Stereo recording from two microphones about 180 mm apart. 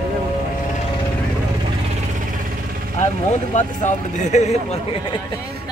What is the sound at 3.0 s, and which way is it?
Speech, 40° left (ahead or behind).